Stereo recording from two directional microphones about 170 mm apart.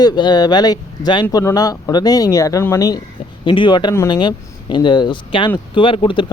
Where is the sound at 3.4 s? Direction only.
30° left (ahead or behind).